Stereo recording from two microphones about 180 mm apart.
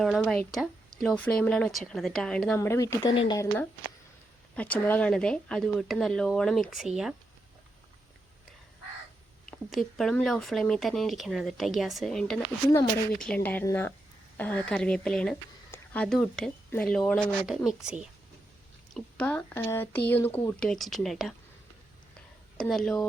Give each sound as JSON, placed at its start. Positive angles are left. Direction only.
{"t": 0.0, "sound": "speech", "side_deg": 0}
{"t": 2.6, "sound": "speech", "side_deg": 15}
{"t": 9.5, "sound": "a woman's voice", "side_deg": 0}
{"t": 18.9, "sound": "a woman's voice", "side_deg": 5}
{"t": 22.5, "sound": "speech", "side_deg": 5}